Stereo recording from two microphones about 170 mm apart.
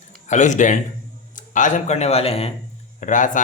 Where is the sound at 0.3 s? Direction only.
45° left (ahead or behind).